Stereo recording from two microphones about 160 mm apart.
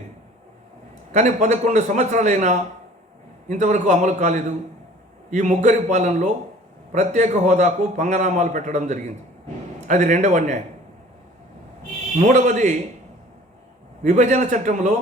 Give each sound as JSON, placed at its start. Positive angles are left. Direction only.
{"t": 1.1, "sound": "a man's voice", "side_deg": -45}
{"t": 12.2, "sound": "a man's voice", "side_deg": -45}
{"t": 14.0, "sound": "a man's voice", "side_deg": -45}